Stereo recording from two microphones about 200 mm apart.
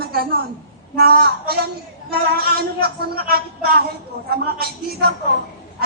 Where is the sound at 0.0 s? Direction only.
50° right (ahead or behind).